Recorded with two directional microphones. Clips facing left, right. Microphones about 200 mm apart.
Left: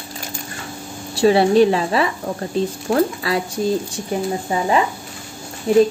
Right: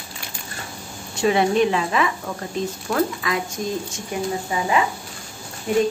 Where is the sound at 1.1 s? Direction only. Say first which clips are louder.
Left 5 dB; 35° left (ahead or behind).